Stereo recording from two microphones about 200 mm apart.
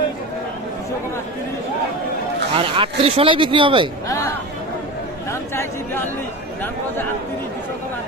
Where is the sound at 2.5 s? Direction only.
25° right (ahead or behind).